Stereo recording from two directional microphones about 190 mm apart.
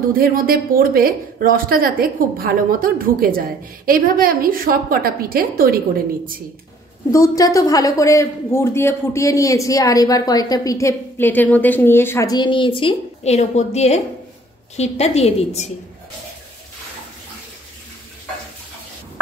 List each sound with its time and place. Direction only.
0.1 s speech: 50° right (ahead or behind)
7.1 s a woman's voice: 20° left (ahead or behind); by 15.7 s 35° left (ahead or behind)